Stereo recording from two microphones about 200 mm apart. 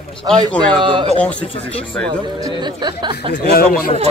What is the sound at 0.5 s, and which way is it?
Speech, 5° left (ahead or behind).